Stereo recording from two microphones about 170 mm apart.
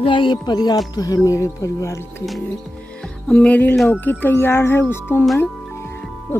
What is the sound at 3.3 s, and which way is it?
Speech, 5° left (ahead or behind).